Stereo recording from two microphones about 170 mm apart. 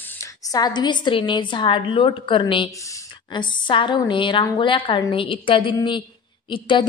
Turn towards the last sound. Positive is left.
turn(degrees=30)  # may be behind; listen again after turning